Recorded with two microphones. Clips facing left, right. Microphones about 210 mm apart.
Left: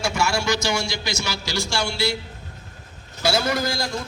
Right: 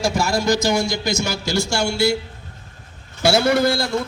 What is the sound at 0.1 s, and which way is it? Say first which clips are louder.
A man's voice: right 4 dB; 40° right (ahead or behind).